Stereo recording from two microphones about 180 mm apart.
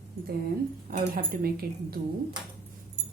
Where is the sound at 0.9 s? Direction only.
50° right (ahead or behind).